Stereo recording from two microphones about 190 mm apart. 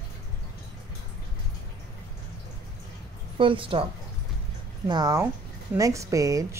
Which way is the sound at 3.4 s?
25° right (ahead or behind).